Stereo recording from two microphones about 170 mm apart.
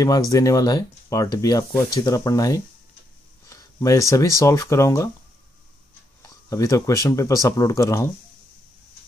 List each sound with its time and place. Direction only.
0.0 s speech: 20° left (ahead or behind)
3.4 s a sound: 20° left (ahead or behind)
4.4 s speech: 15° left (ahead or behind)
6.2 s speech: 20° left (ahead or behind)